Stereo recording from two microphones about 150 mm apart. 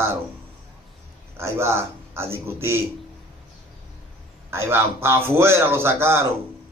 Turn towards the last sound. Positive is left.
turn(degrees=-15)  # may be behind; listen again after turning